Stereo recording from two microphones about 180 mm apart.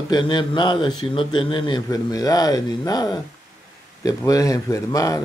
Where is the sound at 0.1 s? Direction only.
25° left (ahead or behind).